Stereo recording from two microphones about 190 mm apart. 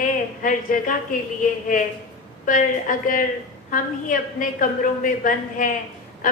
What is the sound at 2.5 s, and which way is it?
A woman's voice, 45° left (ahead or behind).